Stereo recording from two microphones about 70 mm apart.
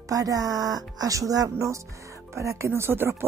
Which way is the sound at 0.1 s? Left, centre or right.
Right.